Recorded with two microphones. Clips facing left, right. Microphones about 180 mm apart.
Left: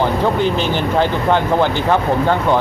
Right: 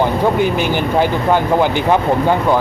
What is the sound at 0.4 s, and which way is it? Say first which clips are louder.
Speech: right 1 dB; 10° right (ahead or behind).